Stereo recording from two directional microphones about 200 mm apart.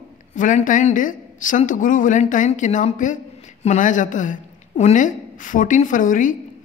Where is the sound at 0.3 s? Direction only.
40° left (ahead or behind).